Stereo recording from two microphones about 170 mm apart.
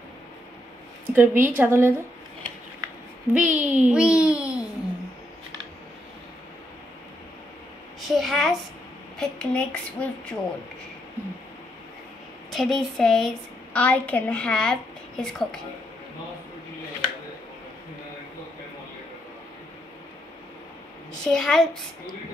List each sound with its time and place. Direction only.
1.1 s a child's voice: 10° right (ahead or behind)
3.3 s a child's voice: 10° right (ahead or behind)
8.1 s a woman's voice: centre (ahead or behind)
12.4 s a woman's voice: centre (ahead or behind)
21.3 s a woman's voice: 5° left (ahead or behind)